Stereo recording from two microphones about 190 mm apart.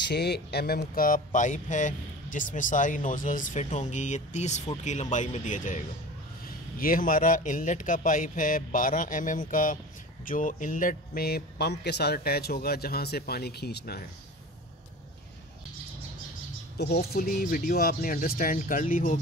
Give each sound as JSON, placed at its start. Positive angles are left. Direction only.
{"t": 0.0, "sound": "a man's voice", "side_deg": 60}
{"t": 16.7, "sound": "a man's voice", "side_deg": 60}